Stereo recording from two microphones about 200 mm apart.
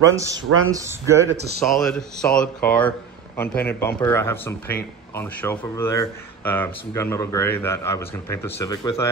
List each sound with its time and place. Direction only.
0.1 s speech: 15° right (ahead or behind)
1.3 s speech: 55° right (ahead or behind)
1.7 s speech: 5° left (ahead or behind)